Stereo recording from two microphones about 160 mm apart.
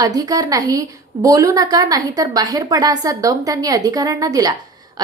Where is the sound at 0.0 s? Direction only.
25° right (ahead or behind).